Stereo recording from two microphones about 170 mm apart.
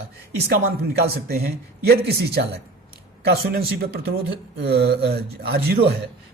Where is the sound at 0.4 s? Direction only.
70° right (ahead or behind).